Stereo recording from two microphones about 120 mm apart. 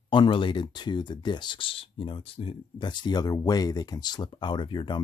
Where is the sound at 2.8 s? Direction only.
35° left (ahead or behind).